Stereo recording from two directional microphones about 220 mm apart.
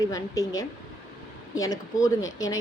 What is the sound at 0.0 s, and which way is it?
Speech, 15° left (ahead or behind).